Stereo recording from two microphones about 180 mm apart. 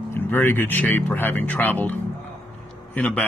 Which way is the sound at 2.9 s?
10° left (ahead or behind).